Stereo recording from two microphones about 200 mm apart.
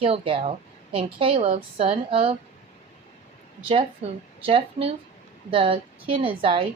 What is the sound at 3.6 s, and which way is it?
A woman's voice, 30° right (ahead or behind).